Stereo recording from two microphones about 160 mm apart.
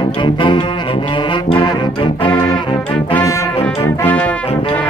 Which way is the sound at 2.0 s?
30° left (ahead or behind).